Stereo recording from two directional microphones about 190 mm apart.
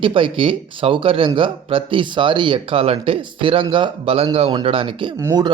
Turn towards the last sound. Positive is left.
turn(degrees=-20)  # may be behind; listen again after turning